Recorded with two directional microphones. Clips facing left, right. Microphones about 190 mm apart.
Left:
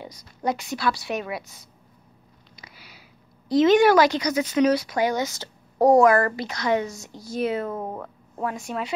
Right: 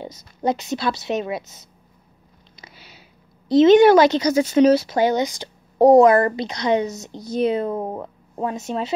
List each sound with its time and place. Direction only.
0.0 s a woman's voice: 25° right (ahead or behind)